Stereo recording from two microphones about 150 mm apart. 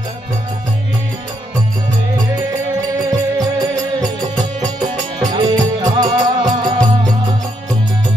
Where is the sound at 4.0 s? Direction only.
30° right (ahead or behind).